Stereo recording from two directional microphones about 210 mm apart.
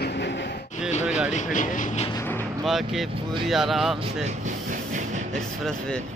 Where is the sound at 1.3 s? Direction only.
35° left (ahead or behind).